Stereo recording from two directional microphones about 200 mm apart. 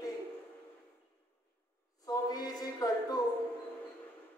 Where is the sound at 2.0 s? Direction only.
20° left (ahead or behind).